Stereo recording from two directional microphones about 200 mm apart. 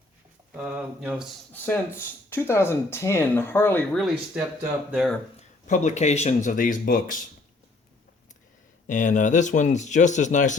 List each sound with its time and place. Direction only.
0.5 s speech: 5° right (ahead or behind)
1.5 s speech: 10° left (ahead or behind)
5.4 s speech: 40° left (ahead or behind)
8.9 s speech: 40° left (ahead or behind)